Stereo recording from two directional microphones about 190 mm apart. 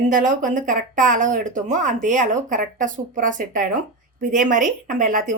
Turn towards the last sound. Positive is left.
turn(degrees=-45)  # may be behind; listen again after turning